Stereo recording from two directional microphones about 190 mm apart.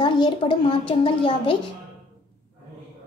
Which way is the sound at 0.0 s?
25° left (ahead or behind).